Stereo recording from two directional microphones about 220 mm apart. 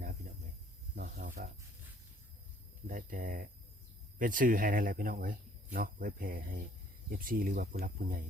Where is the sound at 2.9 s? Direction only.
40° right (ahead or behind).